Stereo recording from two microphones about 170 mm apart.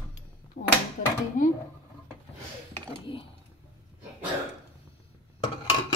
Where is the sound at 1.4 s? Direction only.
50° left (ahead or behind).